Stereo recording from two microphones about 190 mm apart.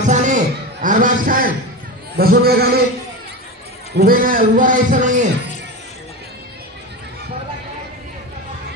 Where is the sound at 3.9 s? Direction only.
50° right (ahead or behind).